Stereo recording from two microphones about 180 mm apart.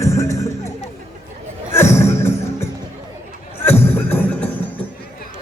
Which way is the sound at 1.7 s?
15° left (ahead or behind).